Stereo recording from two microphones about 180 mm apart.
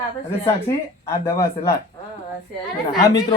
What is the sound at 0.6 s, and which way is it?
Speech, 20° left (ahead or behind).